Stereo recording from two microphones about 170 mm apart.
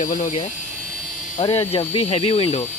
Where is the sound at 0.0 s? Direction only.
45° left (ahead or behind).